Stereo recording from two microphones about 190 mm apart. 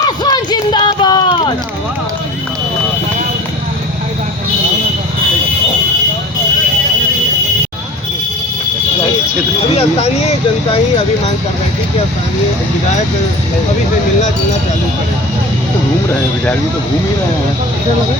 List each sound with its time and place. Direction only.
0.3 s run: 20° left (ahead or behind)